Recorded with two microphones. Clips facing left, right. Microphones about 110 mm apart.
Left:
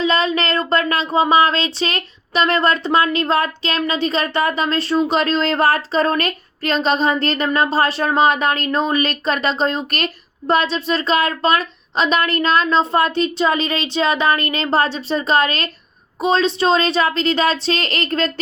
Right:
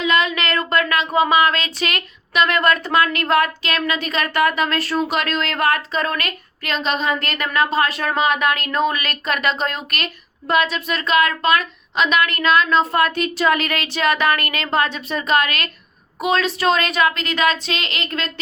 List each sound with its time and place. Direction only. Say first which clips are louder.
0.0 s speech: left 2 dB; 30° left (ahead or behind)